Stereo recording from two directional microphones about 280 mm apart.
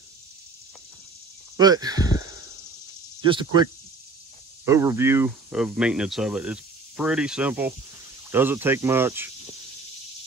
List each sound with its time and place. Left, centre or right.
1.6 s speech: centre
4.6 s speech: centre